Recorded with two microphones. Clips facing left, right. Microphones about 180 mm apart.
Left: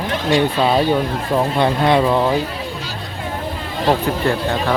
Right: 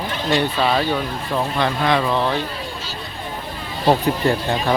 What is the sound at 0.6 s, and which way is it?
Speech, 25° left (ahead or behind).